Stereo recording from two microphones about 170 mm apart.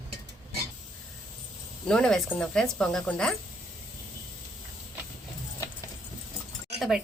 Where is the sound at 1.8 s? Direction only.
5° left (ahead or behind).